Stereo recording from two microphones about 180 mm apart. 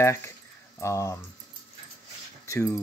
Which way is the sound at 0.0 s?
15° left (ahead or behind).